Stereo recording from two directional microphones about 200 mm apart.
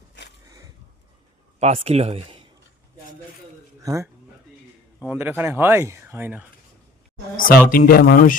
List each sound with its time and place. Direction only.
1.5 s speech: 30° right (ahead or behind)
3.8 s speech: 15° right (ahead or behind)
7.3 s speech: 45° left (ahead or behind)